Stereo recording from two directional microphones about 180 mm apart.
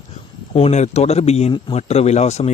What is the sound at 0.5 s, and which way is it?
Speech, 35° left (ahead or behind).